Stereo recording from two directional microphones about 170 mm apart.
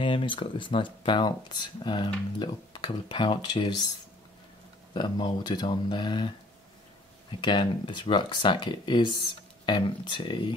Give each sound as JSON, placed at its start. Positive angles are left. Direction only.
{"t": 0.0, "sound": "speech", "side_deg": 30}
{"t": 4.9, "sound": "speech", "side_deg": 25}
{"t": 7.4, "sound": "speech", "side_deg": 30}